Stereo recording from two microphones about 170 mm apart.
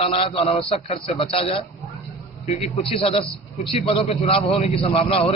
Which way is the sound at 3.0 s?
35° left (ahead or behind).